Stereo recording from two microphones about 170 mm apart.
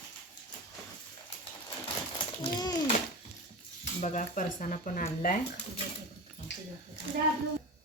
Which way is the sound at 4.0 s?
45° left (ahead or behind).